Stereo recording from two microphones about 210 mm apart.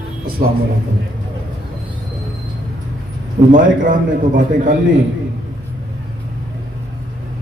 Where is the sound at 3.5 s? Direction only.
40° right (ahead or behind).